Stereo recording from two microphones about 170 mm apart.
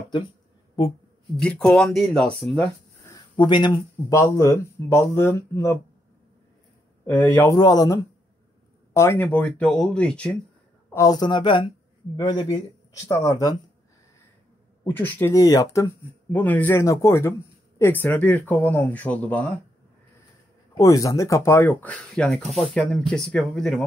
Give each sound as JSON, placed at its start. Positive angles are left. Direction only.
{"t": 1.4, "sound": "speech", "side_deg": 5}
{"t": 3.1, "sound": "speech", "side_deg": 25}
{"t": 7.1, "sound": "speech", "side_deg": 15}
{"t": 7.5, "sound": "speech", "side_deg": 25}
{"t": 10.9, "sound": "speech", "side_deg": 20}
{"t": 14.9, "sound": "speech", "side_deg": 10}
{"t": 20.7, "sound": "speech", "side_deg": 20}